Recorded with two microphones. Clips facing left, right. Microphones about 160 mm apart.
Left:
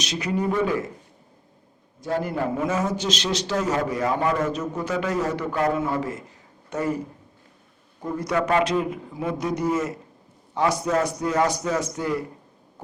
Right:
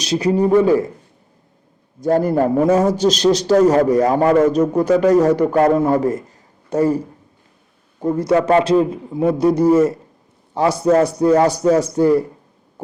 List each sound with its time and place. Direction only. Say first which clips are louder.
0.0 s a man's voice: right 9 dB; 35° right (ahead or behind)
2.0 s a man's voice: right 10 dB; 45° right (ahead or behind)
8.1 s a man's voice: right 8 dB; 25° right (ahead or behind)